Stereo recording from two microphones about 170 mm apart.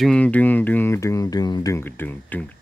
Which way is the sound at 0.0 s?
5° left (ahead or behind).